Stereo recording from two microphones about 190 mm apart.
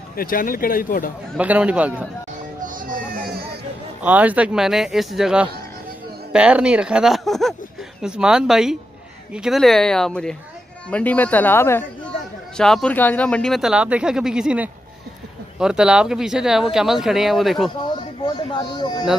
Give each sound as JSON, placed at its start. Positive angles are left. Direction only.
{"t": 0.1, "sound": "speech", "side_deg": 50}
{"t": 1.3, "sound": "a man's voice", "side_deg": -5}
{"t": 2.6, "sound": "music", "side_deg": -45}
{"t": 4.0, "sound": "speech", "side_deg": -10}
{"t": 18.2, "sound": "speech", "side_deg": 20}